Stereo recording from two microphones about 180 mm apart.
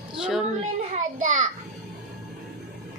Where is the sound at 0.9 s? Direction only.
40° right (ahead or behind).